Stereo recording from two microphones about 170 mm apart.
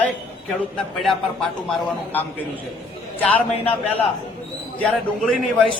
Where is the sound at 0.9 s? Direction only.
Centre (ahead or behind).